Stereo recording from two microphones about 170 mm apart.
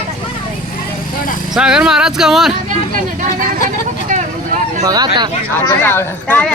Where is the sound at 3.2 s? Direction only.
50° right (ahead or behind).